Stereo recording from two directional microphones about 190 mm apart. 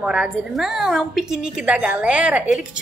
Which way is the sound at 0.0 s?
5° right (ahead or behind).